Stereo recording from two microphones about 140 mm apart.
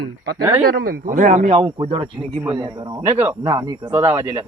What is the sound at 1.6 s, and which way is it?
A man's voice, 35° right (ahead or behind).